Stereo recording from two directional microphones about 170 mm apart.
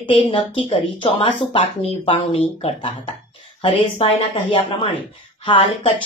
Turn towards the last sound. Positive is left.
turn(degrees=35)  # may be behind; listen again after turning